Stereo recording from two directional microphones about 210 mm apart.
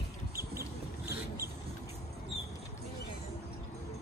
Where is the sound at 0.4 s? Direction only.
10° right (ahead or behind).